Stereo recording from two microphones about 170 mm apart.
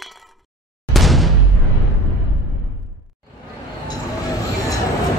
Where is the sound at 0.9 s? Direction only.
Centre (ahead or behind).